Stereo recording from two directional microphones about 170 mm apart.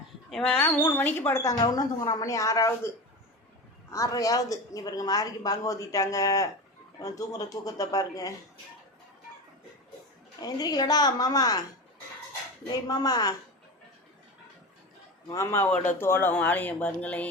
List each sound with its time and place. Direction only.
0.3 s speech: 5° left (ahead or behind)
3.9 s a woman's voice: 20° left (ahead or behind)
10.4 s a woman's voice: 20° left (ahead or behind)
12.9 s a woman's voice: 20° left (ahead or behind)
15.3 s speech: 15° left (ahead or behind)